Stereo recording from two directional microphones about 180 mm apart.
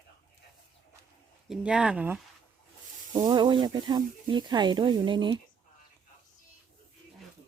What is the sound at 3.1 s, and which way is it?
Speech, 25° right (ahead or behind).